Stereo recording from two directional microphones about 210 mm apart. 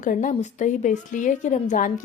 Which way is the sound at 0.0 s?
40° left (ahead or behind).